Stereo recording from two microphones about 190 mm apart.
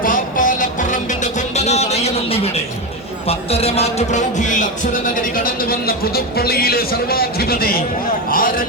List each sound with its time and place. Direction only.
0.0 s music: 45° left (ahead or behind)
3.2 s speech: 30° left (ahead or behind); by 8.6 s 50° left (ahead or behind)